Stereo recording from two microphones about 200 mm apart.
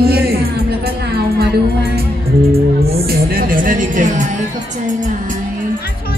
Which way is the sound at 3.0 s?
45° right (ahead or behind).